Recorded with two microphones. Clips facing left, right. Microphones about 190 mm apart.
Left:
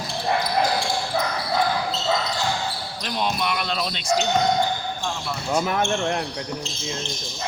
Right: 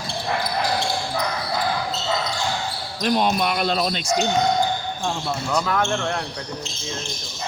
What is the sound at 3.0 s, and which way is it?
Speech, 50° right (ahead or behind).